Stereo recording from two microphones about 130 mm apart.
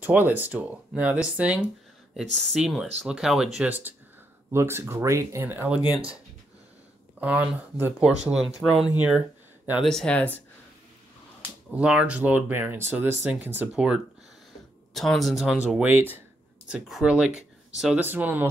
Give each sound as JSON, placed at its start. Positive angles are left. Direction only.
{"t": 0.0, "sound": "speech", "side_deg": -15}
{"t": 7.2, "sound": "speech", "side_deg": -10}
{"t": 8.6, "sound": "speech", "side_deg": 10}
{"t": 9.8, "sound": "speech", "side_deg": 5}
{"t": 11.7, "sound": "speech", "side_deg": -10}
{"t": 15.7, "sound": "speech", "side_deg": -15}
{"t": 16.6, "sound": "speech", "side_deg": -5}
{"t": 18.0, "sound": "speech", "side_deg": -15}